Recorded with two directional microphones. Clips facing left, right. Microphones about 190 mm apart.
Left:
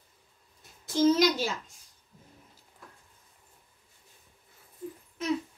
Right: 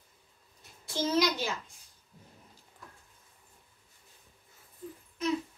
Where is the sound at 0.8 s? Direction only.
45° left (ahead or behind).